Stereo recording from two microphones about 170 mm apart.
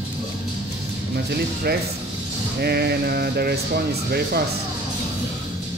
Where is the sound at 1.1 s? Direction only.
65° right (ahead or behind).